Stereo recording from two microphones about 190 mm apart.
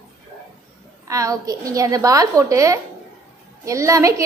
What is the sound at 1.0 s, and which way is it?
A woman's voice, 15° right (ahead or behind).